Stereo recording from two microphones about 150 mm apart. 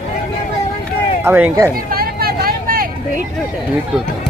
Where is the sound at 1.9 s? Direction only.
90° right; by 2.9 s 70° right (ahead or behind).